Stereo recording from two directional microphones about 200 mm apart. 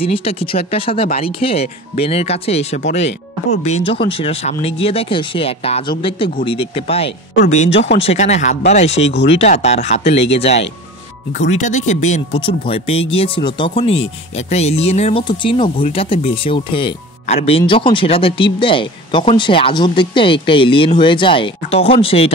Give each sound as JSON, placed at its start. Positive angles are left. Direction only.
{"t": 0.0, "sound": "speech", "side_deg": 30}
{"t": 7.7, "sound": "speech", "side_deg": 60}
{"t": 8.0, "sound": "speech", "side_deg": 35}